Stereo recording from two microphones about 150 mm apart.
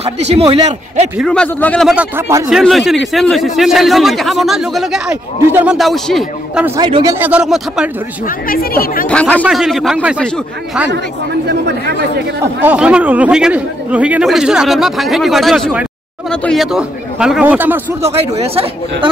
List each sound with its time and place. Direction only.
0.0 s a man's voice: 45° right (ahead or behind)
1.2 s a man's voice: 5° left (ahead or behind)
2.1 s speech: 15° right (ahead or behind)
2.5 s speech: centre (ahead or behind)
5.5 s speech: 15° right (ahead or behind)
5.8 s speech: centre (ahead or behind)
6.8 s a man's voice: 30° right (ahead or behind)
7.2 s speech: 10° right (ahead or behind)
8.5 s speech: 70° left (ahead or behind)
9.0 s a man's voice: 10° left (ahead or behind)
9.4 s speech: 5° right (ahead or behind)
11.4 s speech: 90° right
12.6 s speech: 5° right (ahead or behind)
18.0 s speech: 45° right (ahead or behind)